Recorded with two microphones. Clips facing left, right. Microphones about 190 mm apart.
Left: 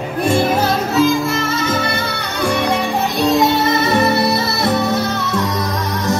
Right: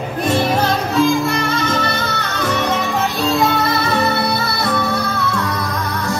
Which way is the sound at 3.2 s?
20° left (ahead or behind).